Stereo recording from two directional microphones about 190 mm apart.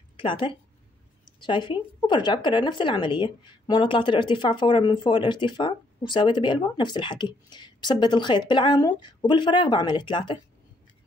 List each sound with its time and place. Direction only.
0.2 s a woman's voice: 25° left (ahead or behind)